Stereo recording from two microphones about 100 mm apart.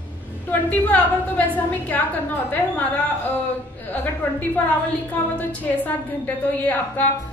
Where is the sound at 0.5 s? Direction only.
15° left (ahead or behind).